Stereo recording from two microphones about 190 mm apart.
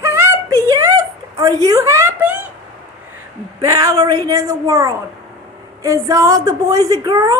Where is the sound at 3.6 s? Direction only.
15° right (ahead or behind).